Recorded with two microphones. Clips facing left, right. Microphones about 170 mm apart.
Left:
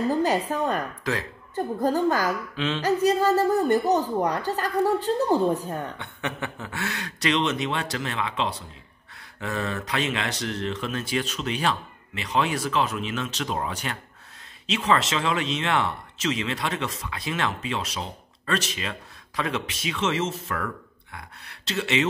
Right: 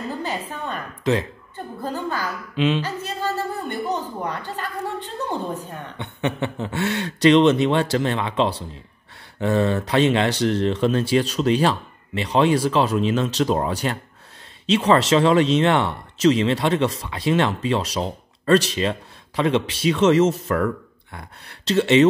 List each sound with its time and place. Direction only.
0.1 s a woman's voice: 40° left (ahead or behind)
1.1 s speech: 25° right (ahead or behind)
1.5 s a woman's voice: 40° left (ahead or behind)
2.5 s a sound: 15° right (ahead or behind)
2.8 s a woman's voice: 40° left (ahead or behind)
5.9 s speech: 25° right (ahead or behind)